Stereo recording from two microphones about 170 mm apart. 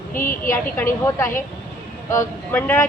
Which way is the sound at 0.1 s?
55° left (ahead or behind).